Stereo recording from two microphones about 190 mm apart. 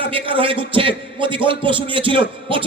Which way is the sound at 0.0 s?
25° right (ahead or behind).